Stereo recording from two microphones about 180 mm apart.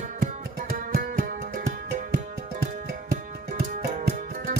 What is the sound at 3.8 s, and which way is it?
Music, 60° right (ahead or behind).